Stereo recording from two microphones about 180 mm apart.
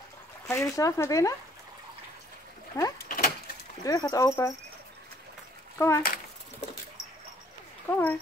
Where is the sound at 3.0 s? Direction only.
50° left (ahead or behind).